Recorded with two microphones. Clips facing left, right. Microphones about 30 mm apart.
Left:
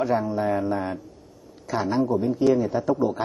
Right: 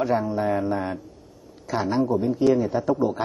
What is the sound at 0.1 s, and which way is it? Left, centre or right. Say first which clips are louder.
A man's voice: even; centre.